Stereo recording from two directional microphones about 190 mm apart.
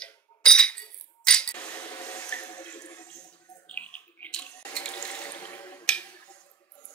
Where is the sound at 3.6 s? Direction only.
5° left (ahead or behind).